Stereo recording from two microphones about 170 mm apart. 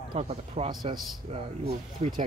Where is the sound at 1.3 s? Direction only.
40° right (ahead or behind).